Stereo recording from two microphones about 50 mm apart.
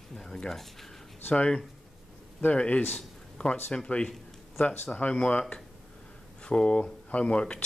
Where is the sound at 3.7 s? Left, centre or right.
Left.